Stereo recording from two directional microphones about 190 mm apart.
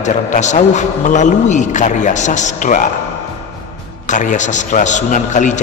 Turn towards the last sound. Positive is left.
turn(degrees=40)  # may be behind; listen again after turning